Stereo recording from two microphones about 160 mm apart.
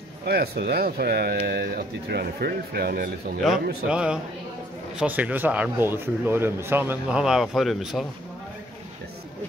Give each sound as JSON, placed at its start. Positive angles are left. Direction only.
{"t": 0.2, "sound": "speech", "side_deg": -85}
{"t": 3.9, "sound": "a man's voice", "side_deg": -5}